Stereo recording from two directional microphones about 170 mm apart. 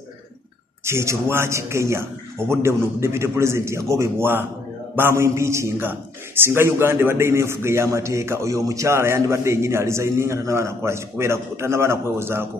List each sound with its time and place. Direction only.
0.8 s a man's voice: 15° right (ahead or behind)